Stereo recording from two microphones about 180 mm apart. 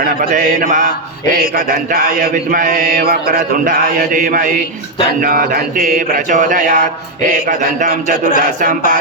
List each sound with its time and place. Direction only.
0.2 s mantra: 50° right (ahead or behind)